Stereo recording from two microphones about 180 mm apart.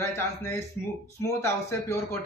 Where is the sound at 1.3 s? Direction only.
15° left (ahead or behind).